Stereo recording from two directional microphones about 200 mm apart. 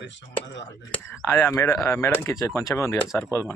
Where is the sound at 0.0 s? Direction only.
65° left (ahead or behind).